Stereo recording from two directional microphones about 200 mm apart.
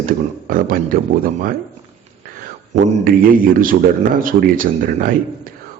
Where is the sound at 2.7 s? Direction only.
45° right (ahead or behind).